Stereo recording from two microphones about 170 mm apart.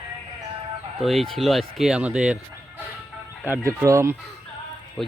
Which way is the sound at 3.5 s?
15° right (ahead or behind).